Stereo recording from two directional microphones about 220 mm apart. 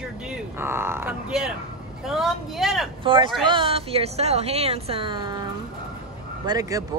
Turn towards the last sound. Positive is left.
turn(degrees=-15)  # may be behind; listen again after turning